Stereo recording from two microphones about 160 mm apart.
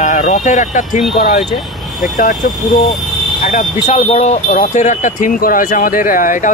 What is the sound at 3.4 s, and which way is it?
Speech, 55° left (ahead or behind).